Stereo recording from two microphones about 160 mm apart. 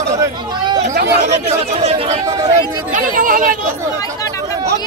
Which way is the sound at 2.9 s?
55° right (ahead or behind).